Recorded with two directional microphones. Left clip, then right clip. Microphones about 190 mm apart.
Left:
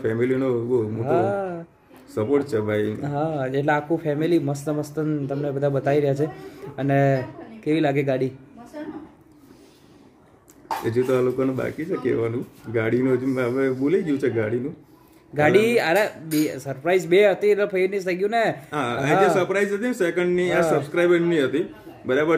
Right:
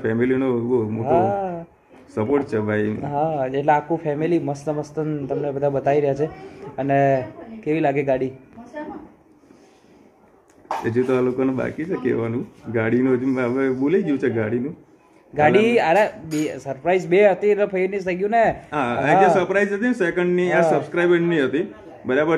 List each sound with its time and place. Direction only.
0.0 s speech: 15° left (ahead or behind)
1.0 s speech: 35° left (ahead or behind)
2.1 s speech: 10° left (ahead or behind)
3.0 s speech: 35° left (ahead or behind)
10.9 s speech: 10° left (ahead or behind)
15.3 s speech: 35° left (ahead or behind)
18.7 s speech: 15° left (ahead or behind)